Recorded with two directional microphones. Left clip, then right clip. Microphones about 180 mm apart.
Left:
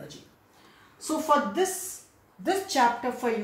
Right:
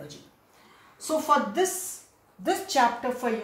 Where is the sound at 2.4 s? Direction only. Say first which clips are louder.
Right 1 dB; 25° right (ahead or behind).